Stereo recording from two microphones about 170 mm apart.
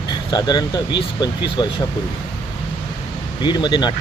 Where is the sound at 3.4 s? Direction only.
25° left (ahead or behind).